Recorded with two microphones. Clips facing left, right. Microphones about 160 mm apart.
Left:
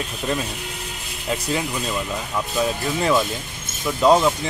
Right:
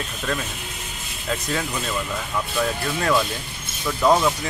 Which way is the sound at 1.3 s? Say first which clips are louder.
Left 2 dB; 15° left (ahead or behind).